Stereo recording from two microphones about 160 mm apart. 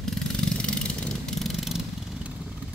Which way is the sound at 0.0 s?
5° left (ahead or behind).